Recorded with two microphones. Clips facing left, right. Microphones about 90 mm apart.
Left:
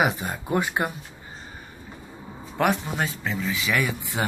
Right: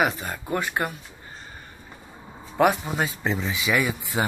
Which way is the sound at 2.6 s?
5° right (ahead or behind).